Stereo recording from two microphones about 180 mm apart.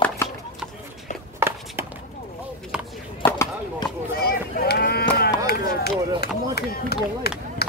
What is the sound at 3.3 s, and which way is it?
Chop, 15° left (ahead or behind).